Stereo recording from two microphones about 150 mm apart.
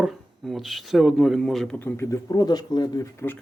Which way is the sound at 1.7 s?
15° left (ahead or behind).